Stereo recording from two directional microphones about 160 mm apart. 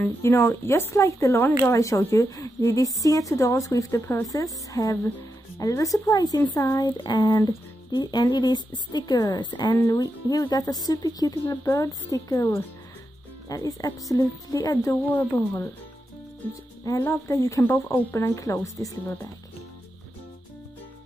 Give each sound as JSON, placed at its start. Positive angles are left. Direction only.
{"t": 0.0, "sound": "speech", "side_deg": 15}
{"t": 16.8, "sound": "speech", "side_deg": 20}